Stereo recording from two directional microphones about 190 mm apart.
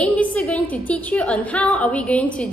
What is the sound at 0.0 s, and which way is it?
A woman's voice, 10° left (ahead or behind).